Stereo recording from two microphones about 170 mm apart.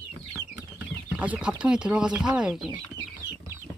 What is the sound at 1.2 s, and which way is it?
Speech, 10° right (ahead or behind).